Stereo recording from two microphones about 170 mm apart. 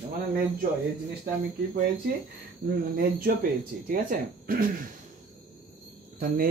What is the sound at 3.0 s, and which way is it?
Speech, 60° right (ahead or behind).